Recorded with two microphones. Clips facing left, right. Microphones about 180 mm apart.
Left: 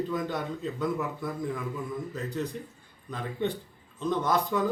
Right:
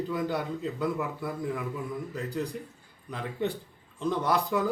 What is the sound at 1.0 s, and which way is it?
Speech, 15° right (ahead or behind).